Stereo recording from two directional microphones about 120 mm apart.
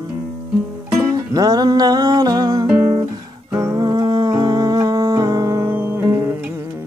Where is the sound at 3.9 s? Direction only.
35° right (ahead or behind); by 6.3 s 15° right (ahead or behind).